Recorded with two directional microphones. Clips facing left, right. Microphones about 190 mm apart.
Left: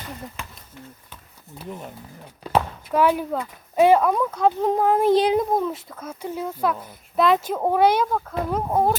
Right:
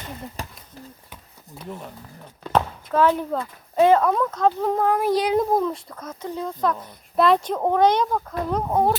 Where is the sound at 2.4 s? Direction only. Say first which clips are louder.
Even; 10° left (ahead or behind); by 5.4 s 25° left (ahead or behind).